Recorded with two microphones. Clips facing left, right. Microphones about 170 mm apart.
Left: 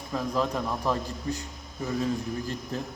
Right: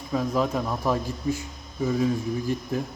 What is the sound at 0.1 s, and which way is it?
Speech, 10° right (ahead or behind).